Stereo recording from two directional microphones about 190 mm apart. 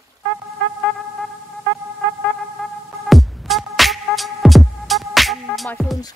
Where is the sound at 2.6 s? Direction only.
Centre (ahead or behind).